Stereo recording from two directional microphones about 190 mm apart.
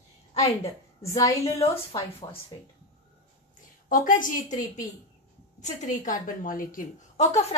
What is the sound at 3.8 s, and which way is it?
Speech, 45° left (ahead or behind).